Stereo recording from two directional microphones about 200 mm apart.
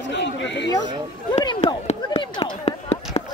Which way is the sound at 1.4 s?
25° left (ahead or behind).